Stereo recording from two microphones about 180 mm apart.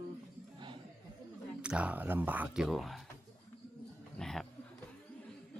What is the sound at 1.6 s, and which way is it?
Speech, 5° right (ahead or behind).